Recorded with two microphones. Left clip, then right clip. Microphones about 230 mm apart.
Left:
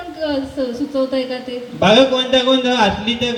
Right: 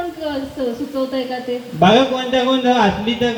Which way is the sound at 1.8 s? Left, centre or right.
Left.